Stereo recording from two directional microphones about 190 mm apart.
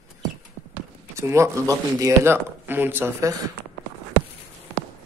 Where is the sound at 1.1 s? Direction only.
15° right (ahead or behind).